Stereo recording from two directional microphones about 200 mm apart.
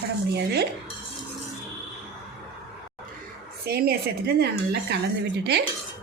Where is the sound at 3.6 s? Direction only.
50° right (ahead or behind).